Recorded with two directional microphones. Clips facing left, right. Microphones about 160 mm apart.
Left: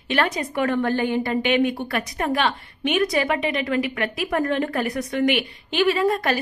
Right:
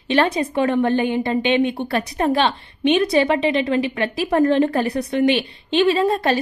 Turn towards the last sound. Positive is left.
turn(degrees=-30)  # may be behind; listen again after turning